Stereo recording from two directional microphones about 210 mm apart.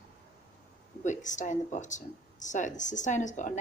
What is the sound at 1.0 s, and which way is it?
A woman's voice, 35° left (ahead or behind).